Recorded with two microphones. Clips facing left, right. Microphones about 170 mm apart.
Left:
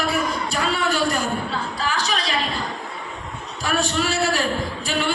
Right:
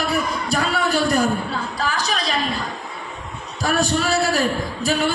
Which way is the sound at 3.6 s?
40° right (ahead or behind).